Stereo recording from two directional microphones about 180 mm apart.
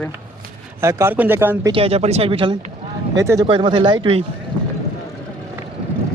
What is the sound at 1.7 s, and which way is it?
Speech, 35° right (ahead or behind).